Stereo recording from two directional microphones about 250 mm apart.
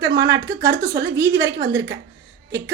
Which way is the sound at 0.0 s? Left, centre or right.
Centre.